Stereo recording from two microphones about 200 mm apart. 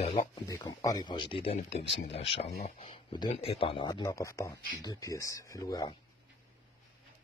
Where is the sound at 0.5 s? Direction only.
15° left (ahead or behind).